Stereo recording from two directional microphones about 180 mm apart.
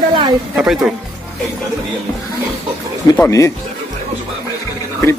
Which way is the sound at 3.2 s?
15° left (ahead or behind).